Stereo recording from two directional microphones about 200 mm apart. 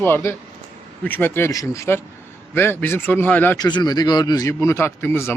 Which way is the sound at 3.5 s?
20° left (ahead or behind).